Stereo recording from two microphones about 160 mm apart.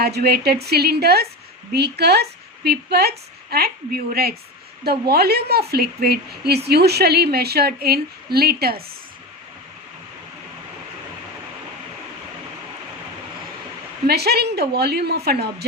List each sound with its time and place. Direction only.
0.0 s a woman's voice: 80° right
14.1 s a woman's voice: 85° right